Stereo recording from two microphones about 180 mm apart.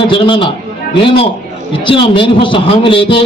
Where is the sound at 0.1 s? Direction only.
30° left (ahead or behind).